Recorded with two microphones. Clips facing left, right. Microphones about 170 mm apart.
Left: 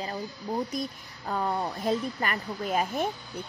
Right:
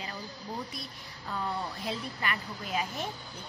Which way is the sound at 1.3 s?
50° left (ahead or behind).